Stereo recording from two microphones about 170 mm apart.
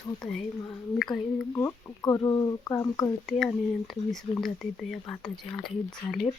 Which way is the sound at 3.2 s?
Centre (ahead or behind).